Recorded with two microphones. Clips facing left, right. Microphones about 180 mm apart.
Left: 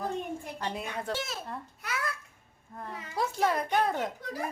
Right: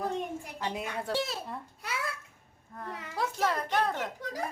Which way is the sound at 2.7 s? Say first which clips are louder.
Left 2 dB; 10° left (ahead or behind).